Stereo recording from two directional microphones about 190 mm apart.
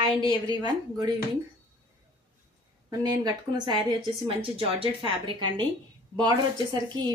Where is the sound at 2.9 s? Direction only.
20° right (ahead or behind).